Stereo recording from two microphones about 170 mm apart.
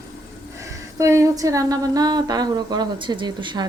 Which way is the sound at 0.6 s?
15° right (ahead or behind).